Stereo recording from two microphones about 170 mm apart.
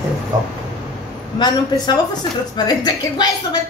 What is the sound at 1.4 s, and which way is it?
A woman's voice, 25° left (ahead or behind).